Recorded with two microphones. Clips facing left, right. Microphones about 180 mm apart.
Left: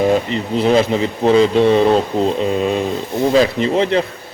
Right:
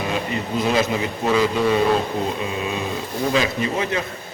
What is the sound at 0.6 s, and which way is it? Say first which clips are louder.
Speech: left 7 dB; 30° left (ahead or behind).